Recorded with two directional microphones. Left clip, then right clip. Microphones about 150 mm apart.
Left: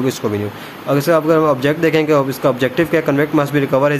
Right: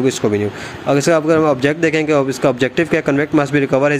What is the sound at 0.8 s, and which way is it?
A man's voice, 25° right (ahead or behind).